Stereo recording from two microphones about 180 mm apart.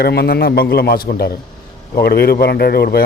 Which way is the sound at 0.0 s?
60° left (ahead or behind).